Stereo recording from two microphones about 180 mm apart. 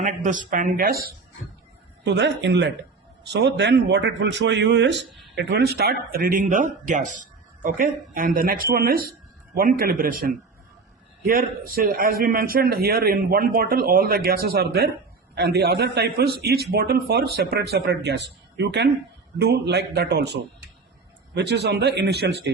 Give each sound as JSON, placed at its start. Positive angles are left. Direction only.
{"t": 0.0, "sound": "speech", "side_deg": -45}
{"t": 2.0, "sound": "a man's voice", "side_deg": -75}
{"t": 11.3, "sound": "a man's voice", "side_deg": -55}